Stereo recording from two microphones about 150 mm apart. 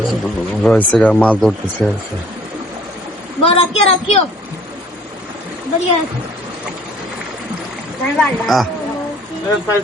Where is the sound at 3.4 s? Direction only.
40° left (ahead or behind).